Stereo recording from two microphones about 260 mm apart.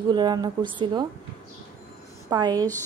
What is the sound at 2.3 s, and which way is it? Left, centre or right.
Speech, centre.